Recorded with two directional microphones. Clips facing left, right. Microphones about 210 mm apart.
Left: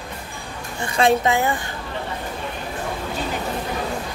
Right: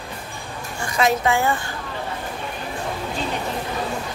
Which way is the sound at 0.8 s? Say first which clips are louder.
Left 2 dB; 25° left (ahead or behind).